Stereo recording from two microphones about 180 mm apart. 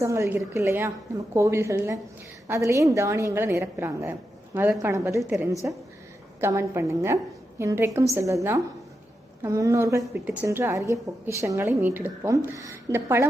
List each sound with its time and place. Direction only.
0.0 s a woman's voice: 15° right (ahead or behind)